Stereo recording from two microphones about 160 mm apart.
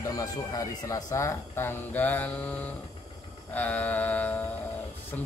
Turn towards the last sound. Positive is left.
turn(degrees=10)  # may be behind; listen again after turning